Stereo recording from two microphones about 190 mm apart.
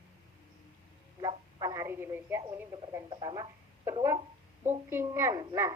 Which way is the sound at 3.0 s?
20° right (ahead or behind).